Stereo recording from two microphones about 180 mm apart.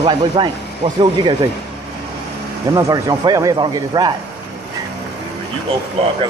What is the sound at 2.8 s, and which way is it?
Speech, 20° right (ahead or behind).